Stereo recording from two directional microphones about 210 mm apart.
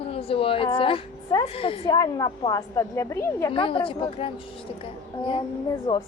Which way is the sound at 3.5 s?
25° left (ahead or behind).